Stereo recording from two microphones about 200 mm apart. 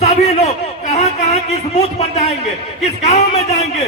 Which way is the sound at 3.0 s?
30° left (ahead or behind).